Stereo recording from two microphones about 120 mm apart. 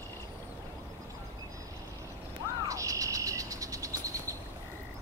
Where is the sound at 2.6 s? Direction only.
25° right (ahead or behind).